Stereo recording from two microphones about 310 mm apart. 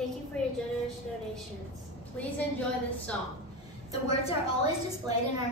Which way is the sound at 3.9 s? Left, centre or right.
Centre.